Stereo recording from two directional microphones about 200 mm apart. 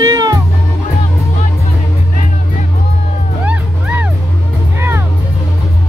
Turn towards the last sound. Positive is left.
turn(degrees=-10)  # may be behind; listen again after turning